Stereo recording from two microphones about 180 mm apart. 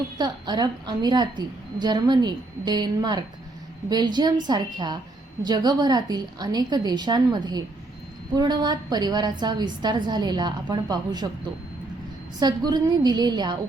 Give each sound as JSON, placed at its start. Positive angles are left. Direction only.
{"t": 0.2, "sound": "a woman's voice", "side_deg": -25}
{"t": 12.4, "sound": "a woman's voice", "side_deg": -20}